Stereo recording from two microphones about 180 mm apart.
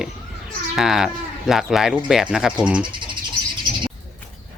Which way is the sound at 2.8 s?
25° right (ahead or behind).